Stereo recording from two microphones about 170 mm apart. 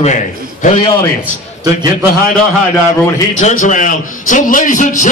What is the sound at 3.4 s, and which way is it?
A man's voice, 45° left (ahead or behind).